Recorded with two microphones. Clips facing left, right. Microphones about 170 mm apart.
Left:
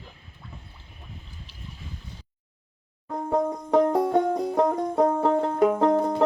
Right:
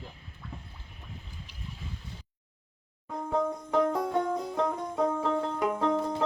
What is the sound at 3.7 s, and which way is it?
Music, 60° left (ahead or behind).